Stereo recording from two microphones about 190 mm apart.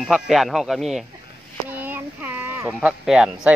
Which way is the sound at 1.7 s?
10° right (ahead or behind).